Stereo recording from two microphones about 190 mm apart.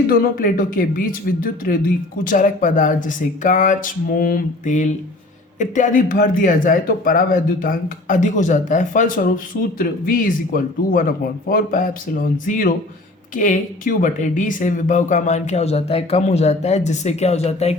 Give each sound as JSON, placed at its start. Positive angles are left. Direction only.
{"t": 0.1, "sound": "a man's voice", "side_deg": 50}